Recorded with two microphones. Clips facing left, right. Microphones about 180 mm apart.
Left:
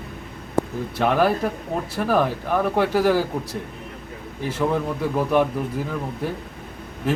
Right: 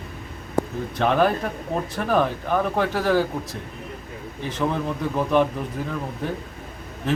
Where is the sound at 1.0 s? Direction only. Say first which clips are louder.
Left 1 dB; 5° left (ahead or behind).